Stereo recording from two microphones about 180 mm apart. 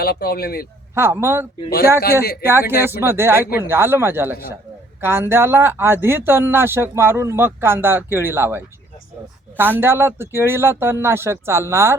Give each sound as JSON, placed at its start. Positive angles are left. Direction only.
{"t": 0.0, "sound": "speech", "side_deg": 60}
{"t": 0.9, "sound": "speech", "side_deg": -15}